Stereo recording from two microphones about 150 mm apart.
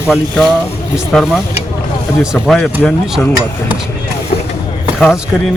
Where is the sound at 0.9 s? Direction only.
Centre (ahead or behind).